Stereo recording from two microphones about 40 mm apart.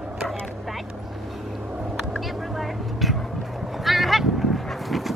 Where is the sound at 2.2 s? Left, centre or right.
Centre.